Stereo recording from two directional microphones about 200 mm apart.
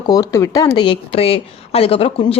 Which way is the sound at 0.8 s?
25° left (ahead or behind).